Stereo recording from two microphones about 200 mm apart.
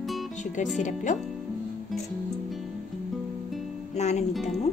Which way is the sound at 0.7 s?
40° left (ahead or behind).